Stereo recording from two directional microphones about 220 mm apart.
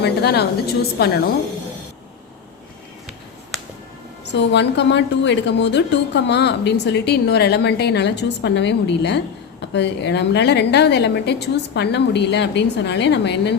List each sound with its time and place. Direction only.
0.0 s a woman's voice: 45° left (ahead or behind)
4.3 s a woman's voice: 50° left (ahead or behind)